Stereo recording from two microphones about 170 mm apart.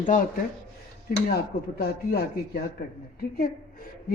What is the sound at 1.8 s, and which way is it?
Speech, 70° left (ahead or behind).